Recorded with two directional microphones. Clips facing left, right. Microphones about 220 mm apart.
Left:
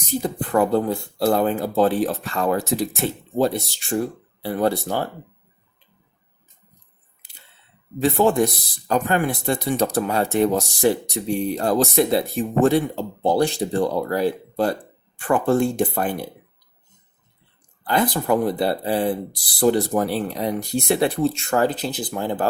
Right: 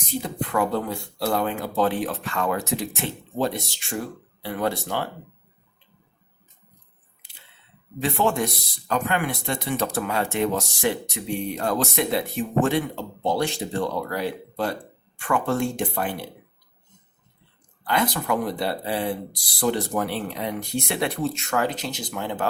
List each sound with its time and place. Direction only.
0.1 s speech: 35° left (ahead or behind)
8.0 s speech: 40° left (ahead or behind)
17.8 s speech: 35° left (ahead or behind)